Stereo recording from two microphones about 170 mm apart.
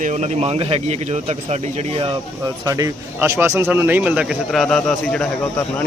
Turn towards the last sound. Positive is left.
turn(degrees=5)  # may be behind; listen again after turning